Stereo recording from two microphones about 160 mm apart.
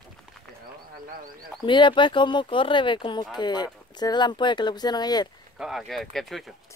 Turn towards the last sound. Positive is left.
turn(degrees=0)  # may be behind; listen again after turning